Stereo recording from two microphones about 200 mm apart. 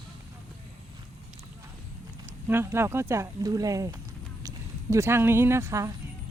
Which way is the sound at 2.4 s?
10° right (ahead or behind).